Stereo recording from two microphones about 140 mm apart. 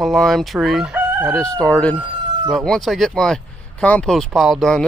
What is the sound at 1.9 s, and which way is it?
Fowl, 35° right (ahead or behind).